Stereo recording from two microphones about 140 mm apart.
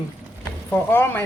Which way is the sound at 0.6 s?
15° left (ahead or behind).